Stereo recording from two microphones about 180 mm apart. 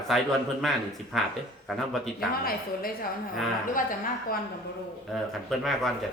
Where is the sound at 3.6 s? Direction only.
50° left (ahead or behind).